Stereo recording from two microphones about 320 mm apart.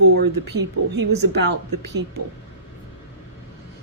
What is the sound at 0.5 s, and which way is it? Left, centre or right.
A woman's voice, right.